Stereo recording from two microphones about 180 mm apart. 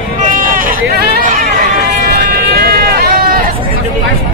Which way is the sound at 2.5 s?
60° right (ahead or behind).